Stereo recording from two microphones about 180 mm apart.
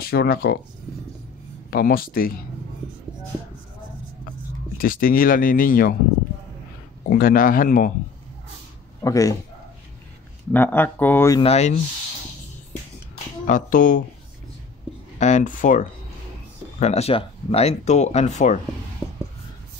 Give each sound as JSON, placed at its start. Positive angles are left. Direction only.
{"t": 0.0, "sound": "speech", "side_deg": 60}
{"t": 1.7, "sound": "speech", "side_deg": 55}
{"t": 4.7, "sound": "speech", "side_deg": 50}
{"t": 7.1, "sound": "speech", "side_deg": 50}
{"t": 9.0, "sound": "speech", "side_deg": 20}
{"t": 10.5, "sound": "speech", "side_deg": 10}
{"t": 11.4, "sound": "speech", "side_deg": 35}
{"t": 13.1, "sound": "a sound", "side_deg": 45}
{"t": 15.1, "sound": "speech", "side_deg": 40}